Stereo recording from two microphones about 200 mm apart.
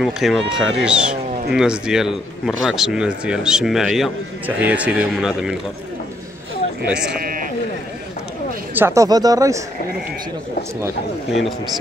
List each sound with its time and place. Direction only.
0.0 s speech: centre (ahead or behind)
7.2 s speech: 45° right (ahead or behind)
8.7 s speech: 15° right (ahead or behind)